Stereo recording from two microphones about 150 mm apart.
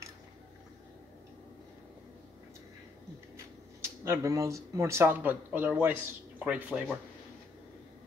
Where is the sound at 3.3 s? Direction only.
15° right (ahead or behind).